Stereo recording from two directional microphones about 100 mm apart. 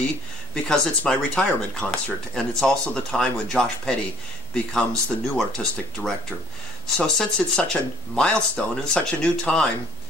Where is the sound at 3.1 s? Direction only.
5° left (ahead or behind).